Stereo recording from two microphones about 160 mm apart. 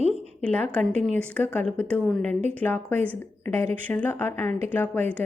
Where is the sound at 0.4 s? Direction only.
5° left (ahead or behind).